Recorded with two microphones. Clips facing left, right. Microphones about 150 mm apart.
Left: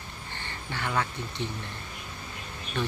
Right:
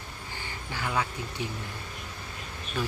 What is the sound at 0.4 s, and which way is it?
Speech, 10° right (ahead or behind).